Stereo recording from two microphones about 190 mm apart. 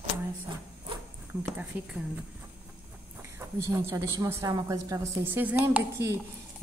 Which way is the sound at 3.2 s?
15° right (ahead or behind).